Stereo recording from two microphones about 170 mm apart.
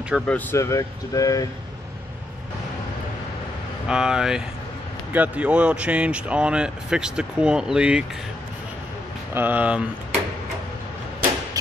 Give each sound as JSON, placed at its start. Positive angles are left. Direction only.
{"t": 0.1, "sound": "speech", "side_deg": 0}
{"t": 0.5, "sound": "speech", "side_deg": 15}
{"t": 3.8, "sound": "speech", "side_deg": -5}
{"t": 9.3, "sound": "speech", "side_deg": -10}